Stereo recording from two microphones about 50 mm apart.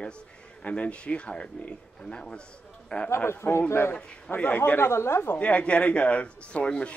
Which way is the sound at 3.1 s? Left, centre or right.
Left.